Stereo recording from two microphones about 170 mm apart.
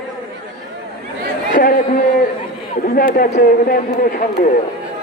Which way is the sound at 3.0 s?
55° left (ahead or behind).